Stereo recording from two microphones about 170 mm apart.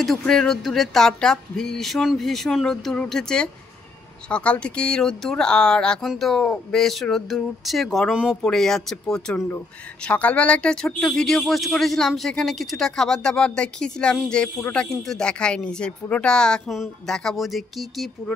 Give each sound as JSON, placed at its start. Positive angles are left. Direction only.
{"t": 0.0, "sound": "speech", "side_deg": 0}